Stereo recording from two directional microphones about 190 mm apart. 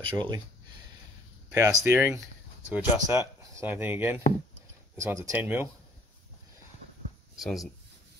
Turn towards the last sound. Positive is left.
turn(degrees=0)  # may be behind; listen again after turning